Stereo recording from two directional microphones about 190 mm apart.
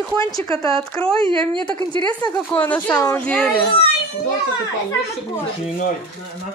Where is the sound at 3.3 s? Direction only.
5° left (ahead or behind).